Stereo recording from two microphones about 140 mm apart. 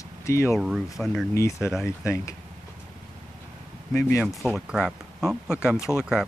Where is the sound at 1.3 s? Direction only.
20° left (ahead or behind).